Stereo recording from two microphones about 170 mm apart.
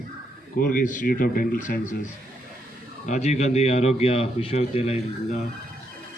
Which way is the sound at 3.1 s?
40° left (ahead or behind).